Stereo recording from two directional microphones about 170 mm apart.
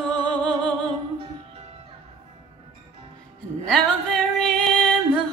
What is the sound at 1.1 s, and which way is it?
Music, 35° right (ahead or behind).